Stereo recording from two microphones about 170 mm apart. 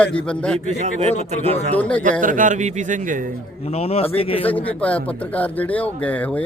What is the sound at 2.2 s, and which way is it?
Speech, 50° right (ahead or behind).